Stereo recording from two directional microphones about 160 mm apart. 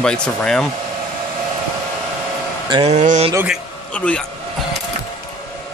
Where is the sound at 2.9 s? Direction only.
45° right (ahead or behind).